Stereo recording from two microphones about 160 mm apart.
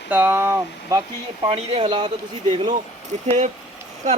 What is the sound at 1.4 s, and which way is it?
Speech, 35° right (ahead or behind).